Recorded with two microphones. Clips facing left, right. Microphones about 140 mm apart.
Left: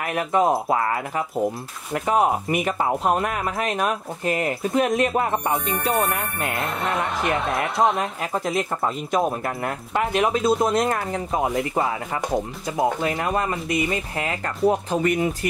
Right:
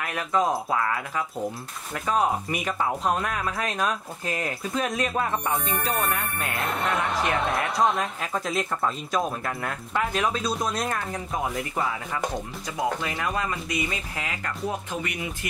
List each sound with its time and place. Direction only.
0.3 s speech: 25° left (ahead or behind)
2.6 s speech: 30° left (ahead or behind)
6.5 s speech: centre (ahead or behind)
7.7 s speech: 25° left (ahead or behind)